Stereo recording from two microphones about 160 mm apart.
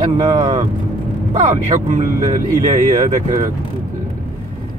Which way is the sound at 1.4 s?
50° right (ahead or behind).